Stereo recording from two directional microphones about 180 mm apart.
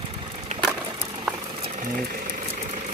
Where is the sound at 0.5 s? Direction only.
45° right (ahead or behind).